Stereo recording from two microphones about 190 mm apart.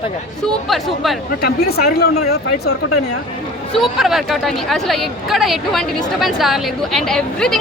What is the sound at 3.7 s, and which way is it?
A woman's voice, centre (ahead or behind).